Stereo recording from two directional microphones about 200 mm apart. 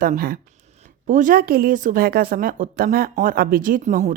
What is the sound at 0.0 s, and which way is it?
A woman's voice, 45° right (ahead or behind).